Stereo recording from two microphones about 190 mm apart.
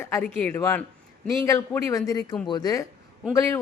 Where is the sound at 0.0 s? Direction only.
15° left (ahead or behind).